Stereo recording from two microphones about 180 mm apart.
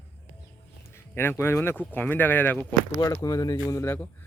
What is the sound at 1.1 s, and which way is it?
Speech, 10° left (ahead or behind).